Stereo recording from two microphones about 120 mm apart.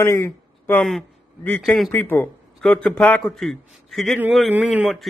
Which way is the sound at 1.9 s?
15° left (ahead or behind).